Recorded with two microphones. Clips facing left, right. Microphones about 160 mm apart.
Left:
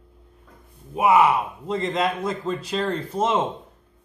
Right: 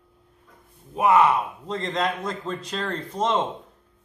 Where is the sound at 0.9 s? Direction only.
5° left (ahead or behind).